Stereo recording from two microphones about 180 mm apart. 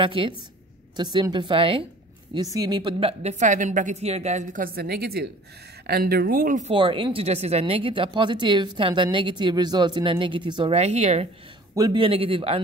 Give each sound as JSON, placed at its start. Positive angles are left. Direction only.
{"t": 0.0, "sound": "a woman's voice", "side_deg": -30}
{"t": 6.7, "sound": "speech", "side_deg": -25}
{"t": 11.7, "sound": "speech", "side_deg": -20}